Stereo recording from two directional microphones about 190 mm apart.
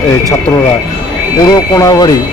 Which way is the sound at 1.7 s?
20° left (ahead or behind).